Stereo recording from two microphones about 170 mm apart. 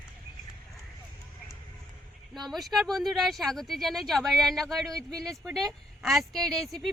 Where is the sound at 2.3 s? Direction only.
Centre (ahead or behind).